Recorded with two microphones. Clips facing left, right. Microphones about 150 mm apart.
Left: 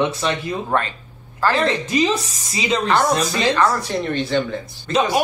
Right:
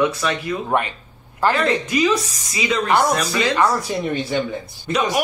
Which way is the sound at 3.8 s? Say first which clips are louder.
Even; 5° right (ahead or behind).